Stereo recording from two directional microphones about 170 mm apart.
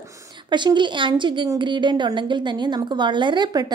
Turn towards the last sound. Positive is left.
turn(degrees=-25)  # may be behind; listen again after turning